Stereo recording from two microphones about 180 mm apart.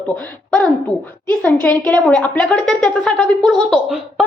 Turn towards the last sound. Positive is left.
turn(degrees=0)  # may be behind; listen again after turning